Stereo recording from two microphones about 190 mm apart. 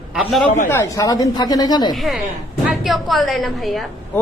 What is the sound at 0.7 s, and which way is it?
A woman's voice, 15° left (ahead or behind).